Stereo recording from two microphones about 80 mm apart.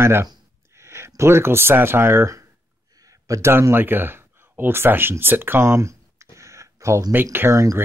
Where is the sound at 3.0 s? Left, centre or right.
Right.